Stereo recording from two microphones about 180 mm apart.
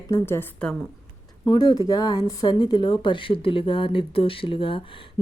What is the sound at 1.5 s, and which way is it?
A woman's voice, 25° left (ahead or behind).